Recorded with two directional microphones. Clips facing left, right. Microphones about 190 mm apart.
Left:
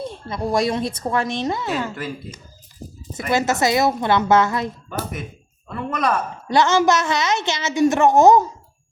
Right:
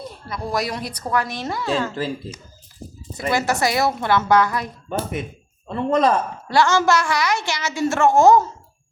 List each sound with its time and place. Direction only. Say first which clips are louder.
0.0 s a woman's voice: left 4 dB; 25° left (ahead or behind)
3.2 s a woman's voice: left 1 dB; 20° left (ahead or behind)
4.9 s speech: right 3 dB; 25° right (ahead or behind)
6.5 s a woman's voice: left 1 dB; 20° left (ahead or behind)